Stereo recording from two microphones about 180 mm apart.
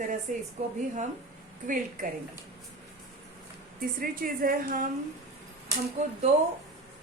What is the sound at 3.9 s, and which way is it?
Speech, 55° right (ahead or behind).